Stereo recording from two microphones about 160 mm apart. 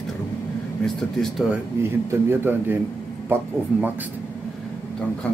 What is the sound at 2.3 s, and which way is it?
Speech, 15° right (ahead or behind).